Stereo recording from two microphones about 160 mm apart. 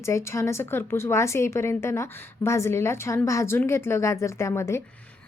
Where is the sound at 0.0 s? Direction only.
15° left (ahead or behind).